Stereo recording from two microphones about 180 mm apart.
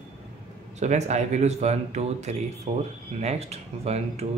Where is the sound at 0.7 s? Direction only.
40° right (ahead or behind).